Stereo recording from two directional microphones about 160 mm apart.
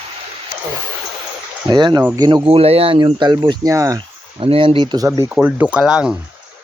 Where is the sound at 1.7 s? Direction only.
25° right (ahead or behind).